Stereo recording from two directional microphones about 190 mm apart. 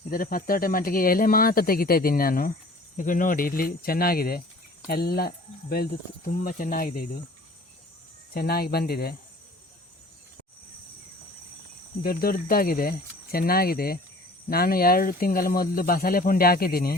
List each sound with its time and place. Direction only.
0.1 s speech: 50° left (ahead or behind)
8.3 s speech: 55° left (ahead or behind)
12.0 s speech: 50° left (ahead or behind)